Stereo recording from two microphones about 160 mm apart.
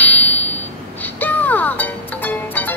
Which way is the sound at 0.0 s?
10° left (ahead or behind).